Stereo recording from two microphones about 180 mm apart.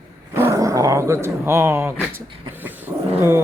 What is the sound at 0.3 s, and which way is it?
Speech, 15° right (ahead or behind).